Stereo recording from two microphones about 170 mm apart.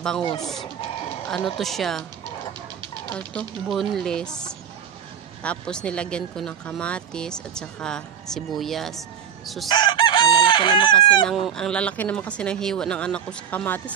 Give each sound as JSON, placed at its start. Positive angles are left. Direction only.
{"t": 0.2, "sound": "speech", "side_deg": 30}
{"t": 1.3, "sound": "speech", "side_deg": 0}
{"t": 3.1, "sound": "speech", "side_deg": 5}
{"t": 5.4, "sound": "speech", "side_deg": 5}
{"t": 9.7, "sound": "chicken", "side_deg": 25}
{"t": 11.2, "sound": "speech", "side_deg": 0}